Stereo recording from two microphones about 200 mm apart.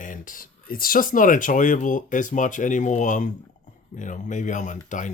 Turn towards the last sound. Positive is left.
turn(degrees=40)  # may be behind; listen again after turning